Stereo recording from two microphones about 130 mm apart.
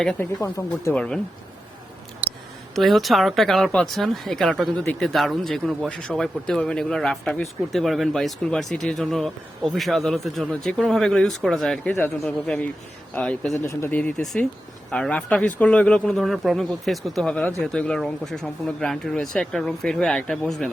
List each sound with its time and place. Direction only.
0.2 s speech: 20° left (ahead or behind)
0.9 s speech: 5° left (ahead or behind)
2.7 s speech: centre (ahead or behind)
11.9 s speech: 20° left (ahead or behind)
12.2 s speech: 5° left (ahead or behind)
13.5 s speech: 20° left (ahead or behind); by 20.7 s 5° left (ahead or behind)